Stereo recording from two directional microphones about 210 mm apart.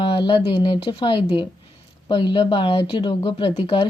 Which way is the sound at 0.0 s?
25° left (ahead or behind).